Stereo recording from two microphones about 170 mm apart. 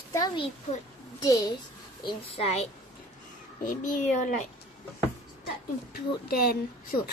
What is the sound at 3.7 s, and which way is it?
Speech, 50° left (ahead or behind).